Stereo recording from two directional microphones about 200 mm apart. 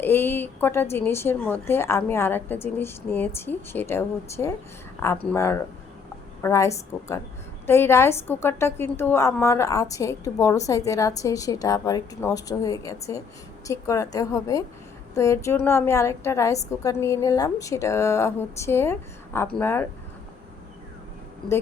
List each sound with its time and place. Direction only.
0.0 s a woman's voice: 10° left (ahead or behind)